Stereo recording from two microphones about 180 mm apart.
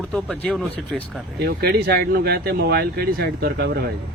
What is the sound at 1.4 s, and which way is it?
Speech, 60° right (ahead or behind).